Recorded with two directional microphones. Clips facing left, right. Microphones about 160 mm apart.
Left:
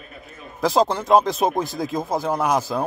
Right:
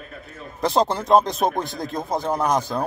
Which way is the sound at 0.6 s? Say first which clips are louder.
Left 1 dB; centre (ahead or behind).